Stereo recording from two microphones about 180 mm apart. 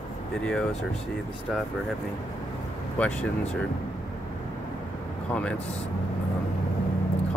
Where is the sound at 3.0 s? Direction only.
5° left (ahead or behind).